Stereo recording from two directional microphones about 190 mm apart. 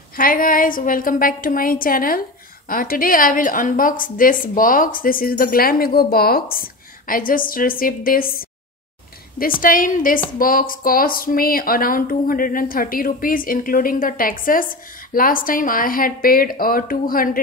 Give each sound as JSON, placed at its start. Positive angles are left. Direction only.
{"t": 0.2, "sound": "speech", "side_deg": 50}
{"t": 9.6, "sound": "speech", "side_deg": 45}